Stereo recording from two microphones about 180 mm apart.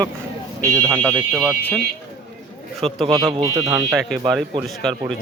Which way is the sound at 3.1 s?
20° right (ahead or behind).